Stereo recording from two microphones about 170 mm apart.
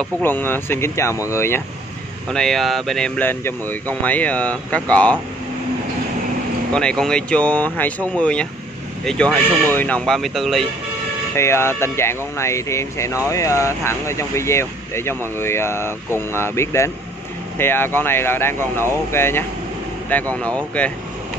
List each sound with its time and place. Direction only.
0.2 s speech: 10° left (ahead or behind)
2.3 s speech: centre (ahead or behind)
6.7 s speech: 5° left (ahead or behind)
11.3 s speech: 15° left (ahead or behind)